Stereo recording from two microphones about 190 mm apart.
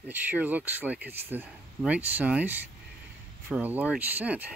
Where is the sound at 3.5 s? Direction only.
10° right (ahead or behind).